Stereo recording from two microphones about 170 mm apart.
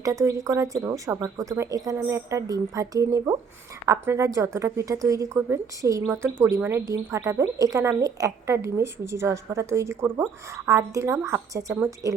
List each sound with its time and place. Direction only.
0.0 s a woman's voice: 20° right (ahead or behind)